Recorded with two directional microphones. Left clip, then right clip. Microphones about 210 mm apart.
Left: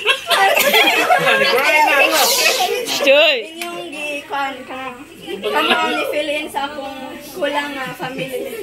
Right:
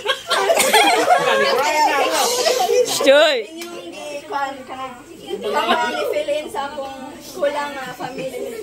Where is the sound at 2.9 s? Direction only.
20° right (ahead or behind).